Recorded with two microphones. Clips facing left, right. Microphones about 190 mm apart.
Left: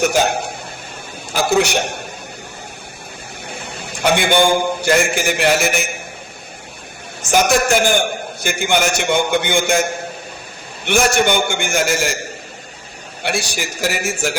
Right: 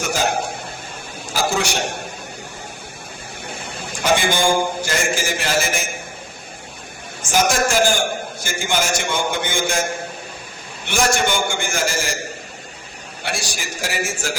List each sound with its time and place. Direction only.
0.0 s a man's voice: 65° left (ahead or behind)
4.0 s a man's voice: 65° left (ahead or behind)
7.2 s a man's voice: 65° left (ahead or behind)
10.8 s a man's voice: 60° left (ahead or behind)
13.2 s a man's voice: 65° left (ahead or behind)